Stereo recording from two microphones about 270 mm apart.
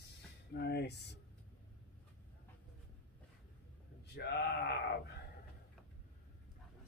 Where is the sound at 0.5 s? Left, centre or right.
Left.